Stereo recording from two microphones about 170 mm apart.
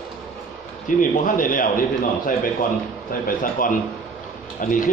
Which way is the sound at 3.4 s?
55° left (ahead or behind).